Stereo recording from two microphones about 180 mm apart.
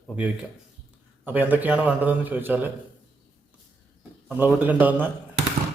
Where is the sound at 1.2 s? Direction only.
10° right (ahead or behind).